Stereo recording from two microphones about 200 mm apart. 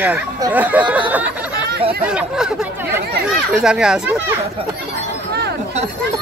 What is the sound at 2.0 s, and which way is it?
Speech, 5° right (ahead or behind).